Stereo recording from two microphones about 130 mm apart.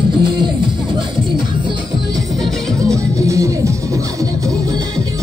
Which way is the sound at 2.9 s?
25° right (ahead or behind).